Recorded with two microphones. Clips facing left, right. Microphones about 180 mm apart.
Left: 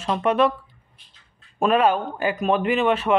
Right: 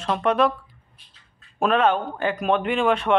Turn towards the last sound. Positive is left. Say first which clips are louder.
# left 1 dB
turn(degrees=5)  # may be behind; listen again after turning